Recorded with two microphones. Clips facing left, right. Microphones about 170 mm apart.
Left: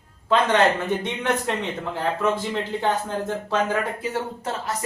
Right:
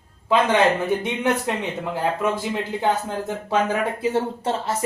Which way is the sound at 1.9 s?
10° right (ahead or behind).